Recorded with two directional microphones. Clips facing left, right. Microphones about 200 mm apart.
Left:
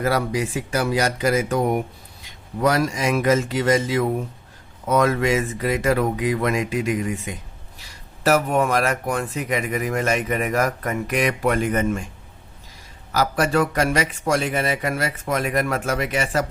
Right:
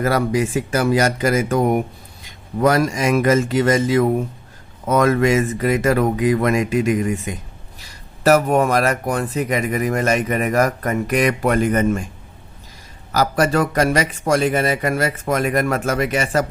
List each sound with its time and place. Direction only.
0.0 s speech: 50° right (ahead or behind)
8.2 s speech: 40° right (ahead or behind)
13.1 s speech: 40° right (ahead or behind)